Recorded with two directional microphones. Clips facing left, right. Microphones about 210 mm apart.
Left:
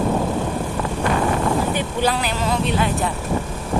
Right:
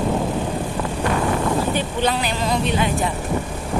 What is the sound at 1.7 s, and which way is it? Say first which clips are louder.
Vehicle: even; 5° left (ahead or behind).